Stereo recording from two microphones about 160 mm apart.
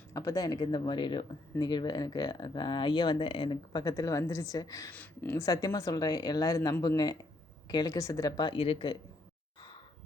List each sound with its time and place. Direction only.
0.1 s speech: 20° left (ahead or behind)
4.9 s speech: 10° left (ahead or behind); by 9.0 s 35° left (ahead or behind)